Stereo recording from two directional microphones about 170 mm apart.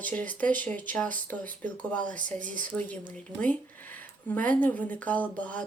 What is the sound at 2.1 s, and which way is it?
Speech, 50° right (ahead or behind).